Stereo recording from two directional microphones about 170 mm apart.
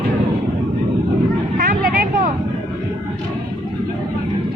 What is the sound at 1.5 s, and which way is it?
Vehicle, 55° right (ahead or behind).